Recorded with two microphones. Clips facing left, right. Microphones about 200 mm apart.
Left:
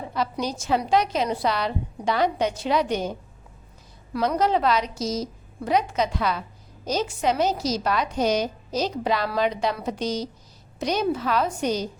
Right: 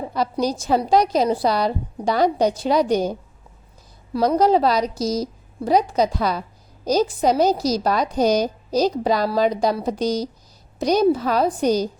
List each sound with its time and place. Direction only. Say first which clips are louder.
0.1 s a woman's voice: right 5 dB; 40° right (ahead or behind)